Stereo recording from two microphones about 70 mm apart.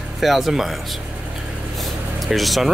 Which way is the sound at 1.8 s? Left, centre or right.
Centre.